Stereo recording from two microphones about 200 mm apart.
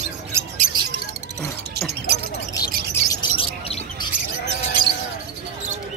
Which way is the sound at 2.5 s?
15° left (ahead or behind).